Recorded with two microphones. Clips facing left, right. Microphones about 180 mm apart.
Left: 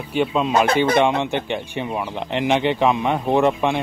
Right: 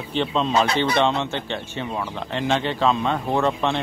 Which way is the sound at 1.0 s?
15° left (ahead or behind).